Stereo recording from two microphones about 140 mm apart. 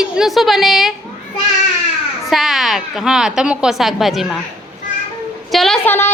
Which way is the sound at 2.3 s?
Centre (ahead or behind).